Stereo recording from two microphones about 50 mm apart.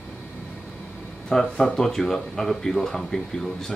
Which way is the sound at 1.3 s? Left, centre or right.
Centre.